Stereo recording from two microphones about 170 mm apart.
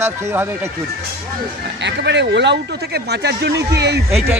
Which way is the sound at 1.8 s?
90° right.